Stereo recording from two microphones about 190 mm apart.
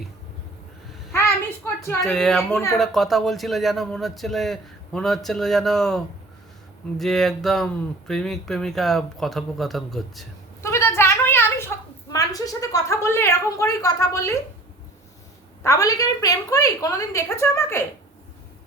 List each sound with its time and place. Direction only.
1.1 s a child's voice: 15° left (ahead or behind)
2.1 s speech: centre (ahead or behind)
10.6 s a sound: 15° left (ahead or behind)
15.6 s a woman's voice: 15° left (ahead or behind)